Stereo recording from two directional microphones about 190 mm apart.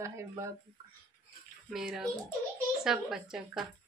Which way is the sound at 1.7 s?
5° right (ahead or behind).